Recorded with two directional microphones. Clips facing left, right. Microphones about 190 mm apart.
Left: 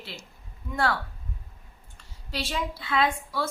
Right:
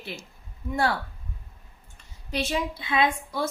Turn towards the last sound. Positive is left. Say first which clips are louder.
# right 1 dB
turn(degrees=-15)  # may be behind; listen again after turning